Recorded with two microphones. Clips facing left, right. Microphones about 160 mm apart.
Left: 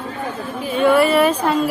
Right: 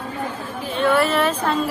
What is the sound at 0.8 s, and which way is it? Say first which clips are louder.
Speech: left 4 dB; 10° left (ahead or behind).